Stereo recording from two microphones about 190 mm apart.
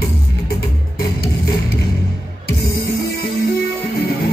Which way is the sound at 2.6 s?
55° left (ahead or behind).